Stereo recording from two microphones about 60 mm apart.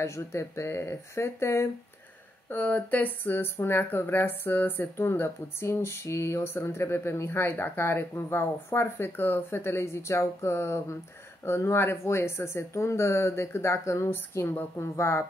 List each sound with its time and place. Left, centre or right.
0.0 s speech: left
2.5 s a woman's voice: left